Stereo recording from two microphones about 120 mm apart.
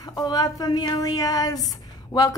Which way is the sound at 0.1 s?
35° left (ahead or behind).